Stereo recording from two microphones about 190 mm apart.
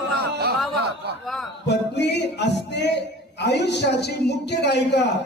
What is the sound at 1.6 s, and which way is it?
Music, 65° left (ahead or behind).